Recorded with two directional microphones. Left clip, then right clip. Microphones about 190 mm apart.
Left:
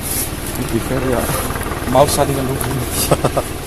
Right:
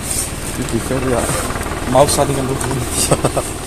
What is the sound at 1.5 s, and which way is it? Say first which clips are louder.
Vehicle: even; 60° right (ahead or behind).